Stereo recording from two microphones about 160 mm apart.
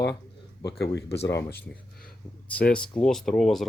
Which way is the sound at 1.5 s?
80° left.